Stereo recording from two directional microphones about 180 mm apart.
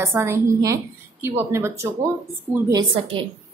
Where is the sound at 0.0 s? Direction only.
15° right (ahead or behind).